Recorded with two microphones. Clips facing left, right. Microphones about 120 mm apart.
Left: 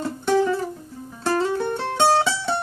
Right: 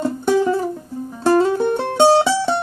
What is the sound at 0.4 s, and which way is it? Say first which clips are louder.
Music: right 3 dB; 25° right (ahead or behind).